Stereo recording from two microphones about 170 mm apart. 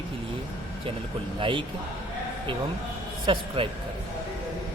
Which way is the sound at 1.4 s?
30° right (ahead or behind).